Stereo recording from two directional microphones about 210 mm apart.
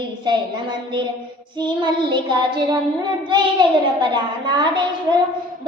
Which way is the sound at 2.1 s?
20° right (ahead or behind).